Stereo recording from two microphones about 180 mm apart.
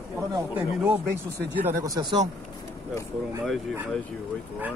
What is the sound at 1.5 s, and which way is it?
Speech, 15° right (ahead or behind).